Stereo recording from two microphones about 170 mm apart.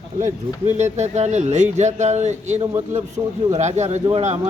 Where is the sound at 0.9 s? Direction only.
40° right (ahead or behind).